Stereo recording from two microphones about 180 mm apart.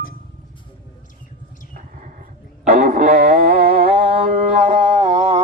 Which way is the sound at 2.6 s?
45° right (ahead or behind).